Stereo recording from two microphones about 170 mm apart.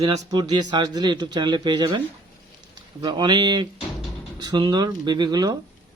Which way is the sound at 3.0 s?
25° right (ahead or behind).